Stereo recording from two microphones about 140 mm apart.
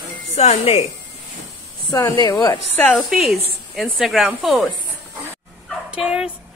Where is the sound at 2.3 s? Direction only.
25° left (ahead or behind).